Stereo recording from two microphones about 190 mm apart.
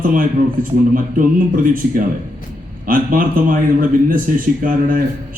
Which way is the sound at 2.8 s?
45° right (ahead or behind).